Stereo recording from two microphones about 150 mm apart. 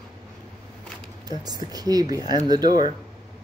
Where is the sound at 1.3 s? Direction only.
25° right (ahead or behind).